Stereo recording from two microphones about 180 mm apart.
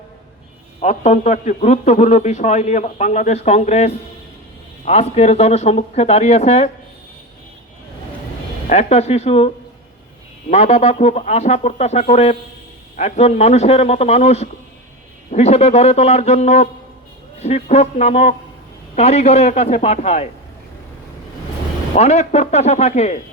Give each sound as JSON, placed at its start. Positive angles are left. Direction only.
{"t": 0.8, "sound": "a man's voice", "side_deg": 40}
{"t": 8.7, "sound": "a man's voice", "side_deg": 35}
{"t": 10.5, "sound": "a man's voice", "side_deg": 40}
{"t": 21.9, "sound": "a man's voice", "side_deg": 40}